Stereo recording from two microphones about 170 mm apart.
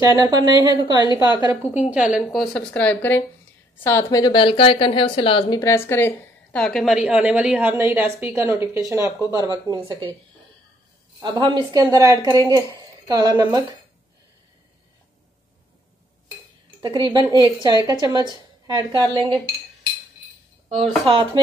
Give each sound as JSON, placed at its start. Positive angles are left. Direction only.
{"t": 0.0, "sound": "speech", "side_deg": -20}
{"t": 1.1, "sound": "a woman's voice", "side_deg": 25}
{"t": 1.4, "sound": "a woman's voice", "side_deg": -15}
{"t": 4.2, "sound": "speech", "side_deg": 30}
{"t": 5.6, "sound": "a woman's voice", "side_deg": 15}
{"t": 11.1, "sound": "speech", "side_deg": -25}
{"t": 16.8, "sound": "speech", "side_deg": -25}
{"t": 21.0, "sound": "speech", "side_deg": -30}